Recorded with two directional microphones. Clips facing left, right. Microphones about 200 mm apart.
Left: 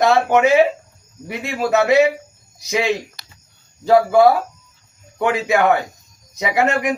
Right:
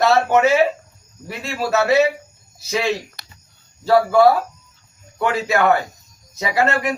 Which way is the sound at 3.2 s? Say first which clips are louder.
Right 1 dB; 55° right (ahead or behind).